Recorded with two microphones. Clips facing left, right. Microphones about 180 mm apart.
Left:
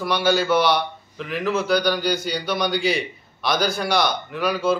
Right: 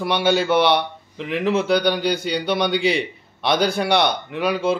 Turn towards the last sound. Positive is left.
turn(degrees=-25)  # may be behind; listen again after turning